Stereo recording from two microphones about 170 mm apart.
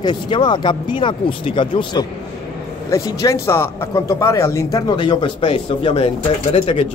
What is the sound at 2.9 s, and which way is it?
Speech, 20° left (ahead or behind).